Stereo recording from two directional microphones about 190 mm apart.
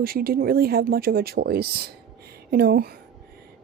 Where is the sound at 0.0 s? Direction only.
50° right (ahead or behind).